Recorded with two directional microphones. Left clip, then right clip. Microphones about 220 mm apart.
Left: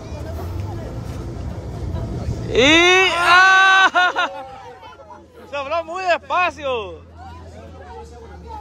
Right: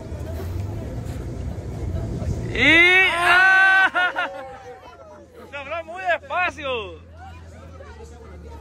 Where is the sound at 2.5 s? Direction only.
20° left (ahead or behind).